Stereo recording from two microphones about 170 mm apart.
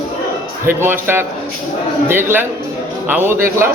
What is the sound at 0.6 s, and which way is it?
Speech, 15° right (ahead or behind).